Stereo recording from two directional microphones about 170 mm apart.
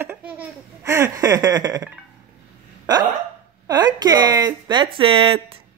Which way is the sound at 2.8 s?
25° right (ahead or behind).